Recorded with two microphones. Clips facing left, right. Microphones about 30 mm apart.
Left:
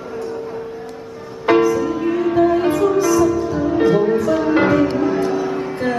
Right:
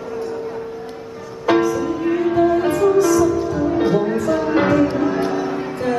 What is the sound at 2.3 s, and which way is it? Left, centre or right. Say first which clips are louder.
Music: left 2 dB; left.